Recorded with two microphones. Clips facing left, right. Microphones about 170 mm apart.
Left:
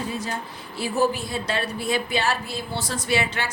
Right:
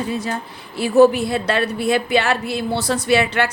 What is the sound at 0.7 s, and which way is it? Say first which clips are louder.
A woman's voice: right 10 dB; 70° right (ahead or behind).